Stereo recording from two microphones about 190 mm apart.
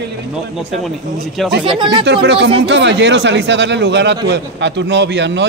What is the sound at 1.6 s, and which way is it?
Speech, 25° right (ahead or behind).